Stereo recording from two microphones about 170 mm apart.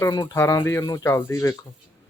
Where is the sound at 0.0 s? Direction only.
20° left (ahead or behind).